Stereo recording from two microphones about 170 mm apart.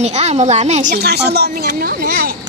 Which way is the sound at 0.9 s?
75° right (ahead or behind).